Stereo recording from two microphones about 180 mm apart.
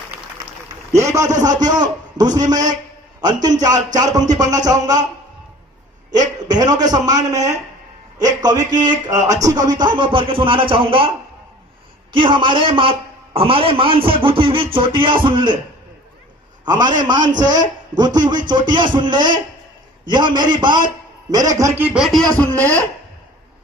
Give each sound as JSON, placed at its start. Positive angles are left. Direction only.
{"t": 0.9, "sound": "a man's voice", "side_deg": -15}
{"t": 6.1, "sound": "a man's voice", "side_deg": -25}
{"t": 12.1, "sound": "a man's voice", "side_deg": -25}
{"t": 16.6, "sound": "a man's voice", "side_deg": -25}